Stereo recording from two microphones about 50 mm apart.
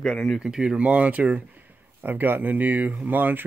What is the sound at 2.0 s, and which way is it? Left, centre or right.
Speech, right.